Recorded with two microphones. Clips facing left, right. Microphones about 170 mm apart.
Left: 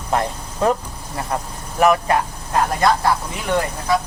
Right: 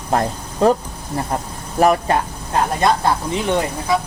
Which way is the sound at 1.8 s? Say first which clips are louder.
Right 1 dB; 35° right (ahead or behind).